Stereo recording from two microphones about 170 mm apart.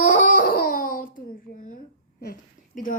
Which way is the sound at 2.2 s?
55° left (ahead or behind).